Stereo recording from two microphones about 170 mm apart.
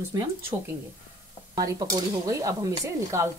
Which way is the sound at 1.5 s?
20° right (ahead or behind).